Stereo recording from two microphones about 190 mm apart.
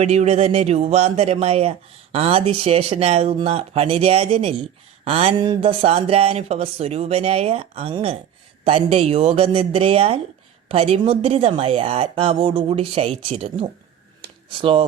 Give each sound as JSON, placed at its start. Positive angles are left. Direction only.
{"t": 0.0, "sound": "speech", "side_deg": -35}